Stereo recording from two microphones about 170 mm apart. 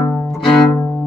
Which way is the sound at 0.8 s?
15° left (ahead or behind).